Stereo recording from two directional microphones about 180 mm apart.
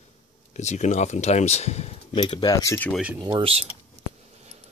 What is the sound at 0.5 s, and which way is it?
Speech, 40° left (ahead or behind).